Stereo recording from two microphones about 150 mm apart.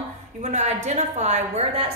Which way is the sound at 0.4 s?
55° right (ahead or behind).